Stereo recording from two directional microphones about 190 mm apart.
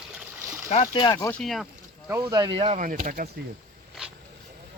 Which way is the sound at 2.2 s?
25° right (ahead or behind).